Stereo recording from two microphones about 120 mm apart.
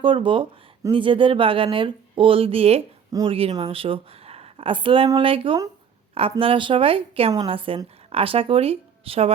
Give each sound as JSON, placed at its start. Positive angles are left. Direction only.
{"t": 0.0, "sound": "a woman's voice", "side_deg": -45}